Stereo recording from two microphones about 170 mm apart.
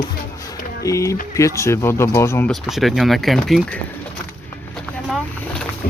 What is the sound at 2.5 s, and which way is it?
Speech, centre (ahead or behind).